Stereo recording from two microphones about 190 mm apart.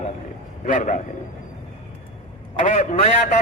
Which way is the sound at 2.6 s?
35° left (ahead or behind).